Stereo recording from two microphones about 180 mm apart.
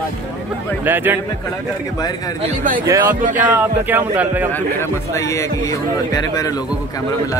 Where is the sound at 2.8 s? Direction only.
15° right (ahead or behind).